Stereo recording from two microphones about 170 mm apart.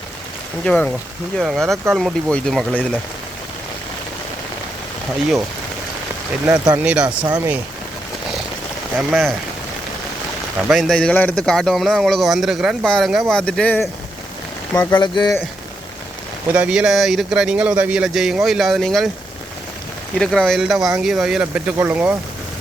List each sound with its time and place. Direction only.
0.6 s a man's voice: 5° left (ahead or behind)
6.7 s a man's voice: 5° right (ahead or behind)
9.0 s a man's voice: centre (ahead or behind)
10.7 s a man's voice: centre (ahead or behind)
14.9 s speech: 25° left (ahead or behind)
16.5 s a man's voice: 5° right (ahead or behind)
20.1 s a man's voice: 5° left (ahead or behind)